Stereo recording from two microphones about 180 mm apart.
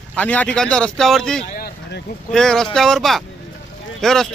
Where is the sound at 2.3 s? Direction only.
5° left (ahead or behind).